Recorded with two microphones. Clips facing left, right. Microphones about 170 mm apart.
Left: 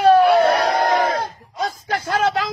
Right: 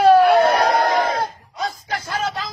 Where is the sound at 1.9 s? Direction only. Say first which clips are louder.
Left 8 dB; 60° left (ahead or behind).